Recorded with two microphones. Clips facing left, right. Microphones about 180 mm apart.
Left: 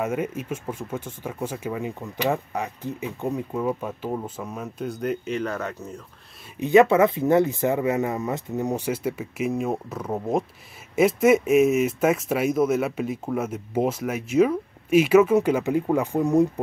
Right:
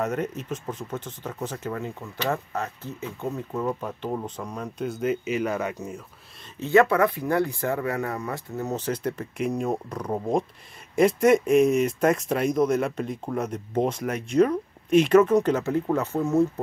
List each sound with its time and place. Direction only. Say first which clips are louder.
0.0 s speech: left 1 dB; 10° left (ahead or behind); by 6.0 s 10° right (ahead or behind)
6.6 s speech: left 3 dB; 20° left (ahead or behind)